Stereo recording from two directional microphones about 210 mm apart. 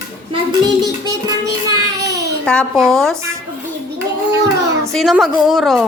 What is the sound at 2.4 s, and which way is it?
Speech, 5° left (ahead or behind).